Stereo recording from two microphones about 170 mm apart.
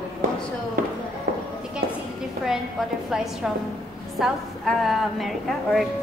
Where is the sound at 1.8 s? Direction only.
60° right (ahead or behind).